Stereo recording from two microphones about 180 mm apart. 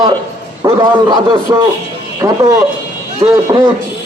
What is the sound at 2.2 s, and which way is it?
Speech, 15° right (ahead or behind).